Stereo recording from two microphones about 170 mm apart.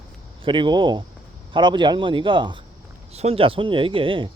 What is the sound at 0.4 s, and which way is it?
Speech, 30° right (ahead or behind).